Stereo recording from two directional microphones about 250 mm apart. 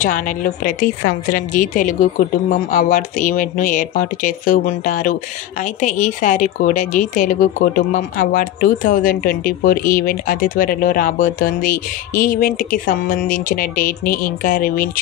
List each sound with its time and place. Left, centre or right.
0.0 s speech: left